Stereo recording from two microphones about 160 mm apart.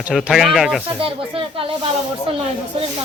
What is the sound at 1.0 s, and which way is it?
Speech, 35° right (ahead or behind).